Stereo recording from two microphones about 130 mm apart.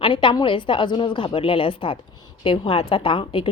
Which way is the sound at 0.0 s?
40° left (ahead or behind).